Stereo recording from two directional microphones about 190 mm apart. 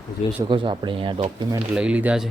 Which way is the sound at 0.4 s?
25° right (ahead or behind).